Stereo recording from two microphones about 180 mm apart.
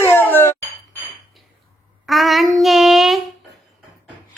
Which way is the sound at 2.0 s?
Centre (ahead or behind).